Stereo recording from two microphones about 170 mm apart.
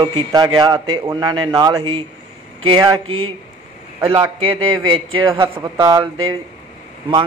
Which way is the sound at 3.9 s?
15° right (ahead or behind).